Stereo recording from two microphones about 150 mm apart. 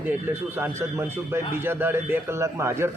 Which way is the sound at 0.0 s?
15° right (ahead or behind).